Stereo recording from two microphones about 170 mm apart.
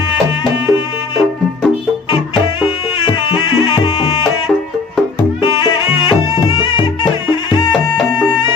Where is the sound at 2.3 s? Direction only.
30° left (ahead or behind).